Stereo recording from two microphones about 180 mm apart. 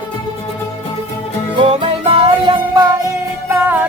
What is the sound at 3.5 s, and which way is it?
Music, 10° right (ahead or behind).